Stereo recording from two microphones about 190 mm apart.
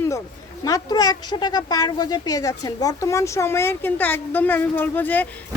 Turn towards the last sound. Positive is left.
turn(degrees=10)  # may be behind; listen again after turning